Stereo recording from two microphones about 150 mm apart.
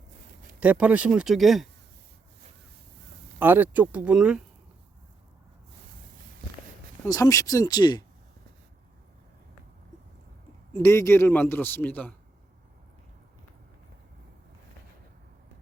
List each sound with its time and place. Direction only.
0.6 s speech: 10° right (ahead or behind)
3.3 s speech: 15° right (ahead or behind)
7.0 s speech: 20° left (ahead or behind)
10.8 s a man's voice: 20° left (ahead or behind)